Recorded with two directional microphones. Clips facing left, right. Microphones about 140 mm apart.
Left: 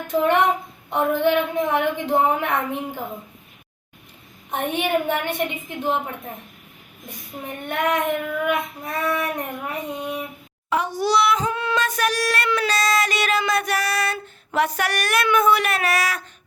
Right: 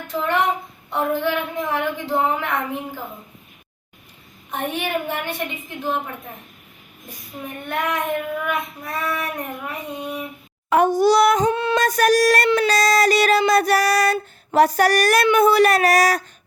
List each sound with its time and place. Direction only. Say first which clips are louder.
0.1 s a woman's voice: left 3 dB; 20° left (ahead or behind)
4.5 s a woman's voice: left 2 dB; 20° left (ahead or behind)
7.7 s a woman's voice: left 1 dB; 20° left (ahead or behind)
10.7 s a sound: right 6 dB; 50° right (ahead or behind)
11.5 s music: right 4 dB; 30° right (ahead or behind)
11.8 s a sound: right 8 dB; 40° right (ahead or behind)